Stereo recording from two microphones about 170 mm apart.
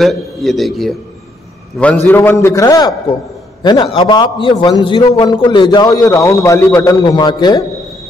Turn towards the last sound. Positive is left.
turn(degrees=25)  # may be behind; listen again after turning